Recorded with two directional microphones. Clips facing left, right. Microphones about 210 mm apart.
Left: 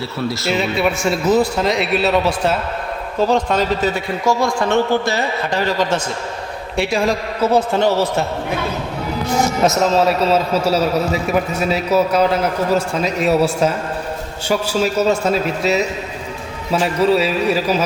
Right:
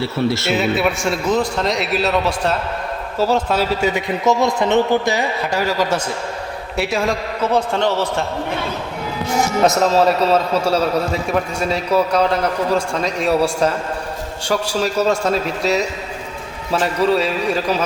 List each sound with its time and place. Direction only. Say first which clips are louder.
0.0 s speech: right 4 dB; 25° right (ahead or behind)
0.4 s a man's voice: even; centre (ahead or behind)
7.4 s a man's voice: left 3 dB; 10° left (ahead or behind)
9.6 s a man's voice: right 1 dB; centre (ahead or behind)